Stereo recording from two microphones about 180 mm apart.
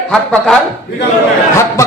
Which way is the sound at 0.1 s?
5° left (ahead or behind).